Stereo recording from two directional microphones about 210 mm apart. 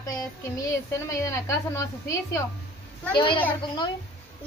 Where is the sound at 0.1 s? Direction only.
15° left (ahead or behind).